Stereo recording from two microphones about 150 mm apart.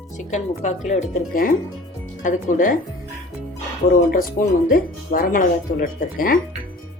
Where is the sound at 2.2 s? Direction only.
60° left (ahead or behind).